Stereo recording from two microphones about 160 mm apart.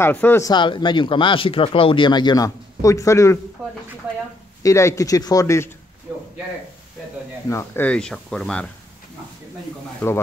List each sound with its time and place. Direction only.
0.0 s speech: 10° left (ahead or behind)
0.5 s speech: 30° left (ahead or behind)
3.6 s a sound: centre (ahead or behind)
4.6 s speech: 20° left (ahead or behind)
6.1 s a sound: 5° right (ahead or behind)
7.4 s speech: 15° left (ahead or behind)
9.9 s speech: 15° left (ahead or behind)